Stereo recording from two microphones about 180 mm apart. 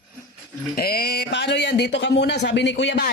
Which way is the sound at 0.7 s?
60° left (ahead or behind).